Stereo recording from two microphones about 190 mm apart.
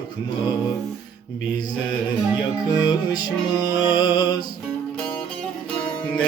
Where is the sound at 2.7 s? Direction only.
20° left (ahead or behind).